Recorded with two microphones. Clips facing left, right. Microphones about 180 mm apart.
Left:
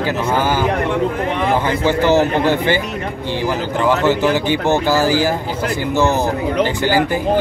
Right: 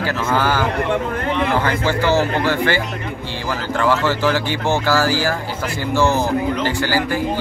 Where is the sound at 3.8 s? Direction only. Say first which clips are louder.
Left 3 dB; 20° left (ahead or behind).